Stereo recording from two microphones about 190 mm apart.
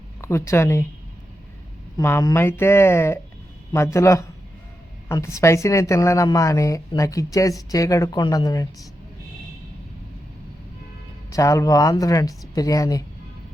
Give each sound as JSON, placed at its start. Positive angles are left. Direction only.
{"t": 0.2, "sound": "speech", "side_deg": 15}
{"t": 2.0, "sound": "speech", "side_deg": 15}
{"t": 11.3, "sound": "speech", "side_deg": 15}